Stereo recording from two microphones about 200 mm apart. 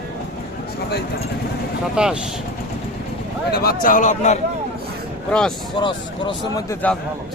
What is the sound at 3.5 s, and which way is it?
Speech, 50° left (ahead or behind).